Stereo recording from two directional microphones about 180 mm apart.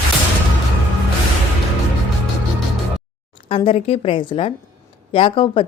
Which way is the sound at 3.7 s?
30° left (ahead or behind).